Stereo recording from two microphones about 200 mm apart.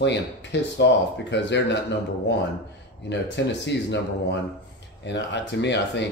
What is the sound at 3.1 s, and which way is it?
Speech, 60° left (ahead or behind).